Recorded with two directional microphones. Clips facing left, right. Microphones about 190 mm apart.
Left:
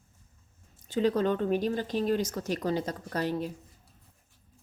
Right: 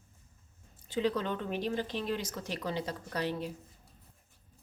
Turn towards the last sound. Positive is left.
turn(degrees=45)  # may be behind; listen again after turning